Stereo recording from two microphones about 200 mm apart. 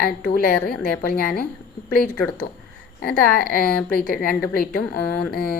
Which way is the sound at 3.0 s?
50° left (ahead or behind).